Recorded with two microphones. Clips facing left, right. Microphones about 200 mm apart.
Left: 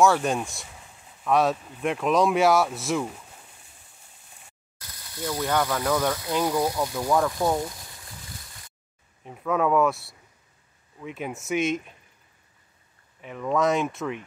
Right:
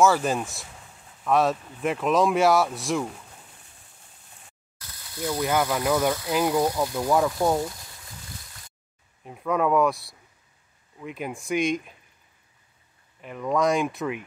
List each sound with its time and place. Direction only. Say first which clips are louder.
0.0 s speech: even; centre (ahead or behind)
5.3 s speech: right 1 dB; 5° right (ahead or behind)
9.2 s speech: even; centre (ahead or behind)
13.2 s speech: even; centre (ahead or behind)